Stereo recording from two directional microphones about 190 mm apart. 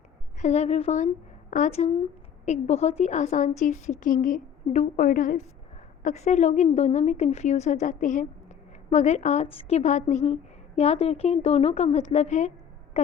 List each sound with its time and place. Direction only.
0.3 s a woman's voice: 35° left (ahead or behind)